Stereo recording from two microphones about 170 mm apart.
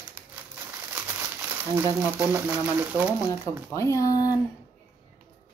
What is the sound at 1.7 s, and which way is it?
Speech, 10° right (ahead or behind).